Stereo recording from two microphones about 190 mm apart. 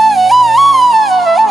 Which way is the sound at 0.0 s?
Centre (ahead or behind).